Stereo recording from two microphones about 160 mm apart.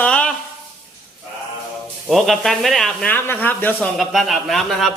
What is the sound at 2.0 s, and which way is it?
Speech, centre (ahead or behind).